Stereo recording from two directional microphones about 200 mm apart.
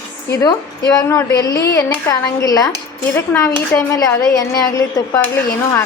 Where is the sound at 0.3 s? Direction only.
20° left (ahead or behind).